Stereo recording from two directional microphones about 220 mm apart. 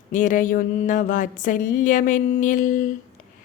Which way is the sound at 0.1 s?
35° left (ahead or behind).